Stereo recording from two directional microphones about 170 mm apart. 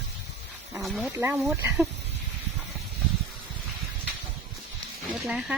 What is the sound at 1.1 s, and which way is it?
Speech, 15° right (ahead or behind).